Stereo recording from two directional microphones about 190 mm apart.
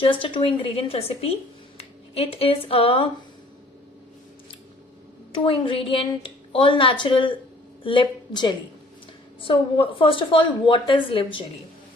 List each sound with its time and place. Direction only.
0.0 s a woman's voice: 25° left (ahead or behind)
5.3 s a woman's voice: 25° left (ahead or behind)